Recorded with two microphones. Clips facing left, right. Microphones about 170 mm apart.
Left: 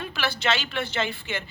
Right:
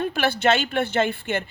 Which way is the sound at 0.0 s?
50° right (ahead or behind).